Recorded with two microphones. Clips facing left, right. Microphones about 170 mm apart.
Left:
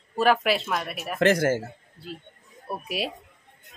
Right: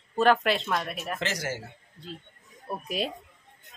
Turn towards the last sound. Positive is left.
turn(degrees=5)  # may be behind; listen again after turning